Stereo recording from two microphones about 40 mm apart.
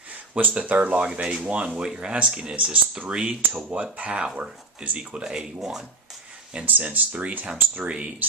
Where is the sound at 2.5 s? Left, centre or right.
Right.